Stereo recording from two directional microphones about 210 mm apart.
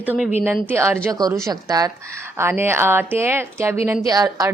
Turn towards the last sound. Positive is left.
turn(degrees=-15)  # may be behind; listen again after turning